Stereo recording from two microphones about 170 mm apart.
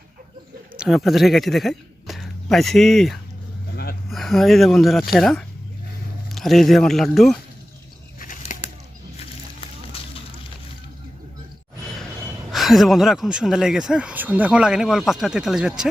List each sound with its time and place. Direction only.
0.8 s speech: centre (ahead or behind)
8.2 s bird flight: 50° left (ahead or behind)
9.6 s a sound: 35° left (ahead or behind)
12.5 s speech: centre (ahead or behind)